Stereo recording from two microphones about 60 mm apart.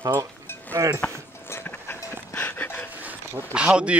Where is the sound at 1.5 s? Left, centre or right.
Left.